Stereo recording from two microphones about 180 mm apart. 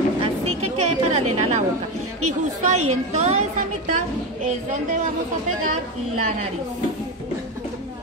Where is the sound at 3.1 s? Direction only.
35° right (ahead or behind).